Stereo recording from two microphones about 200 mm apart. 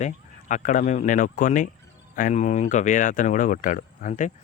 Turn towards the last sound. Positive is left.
turn(degrees=40)  # may be behind; listen again after turning